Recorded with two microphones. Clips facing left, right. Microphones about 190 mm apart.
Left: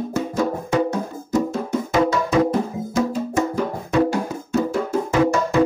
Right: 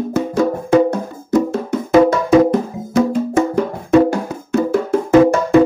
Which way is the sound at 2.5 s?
65° right (ahead or behind).